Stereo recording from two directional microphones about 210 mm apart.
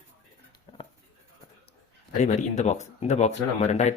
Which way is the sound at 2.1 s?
35° left (ahead or behind).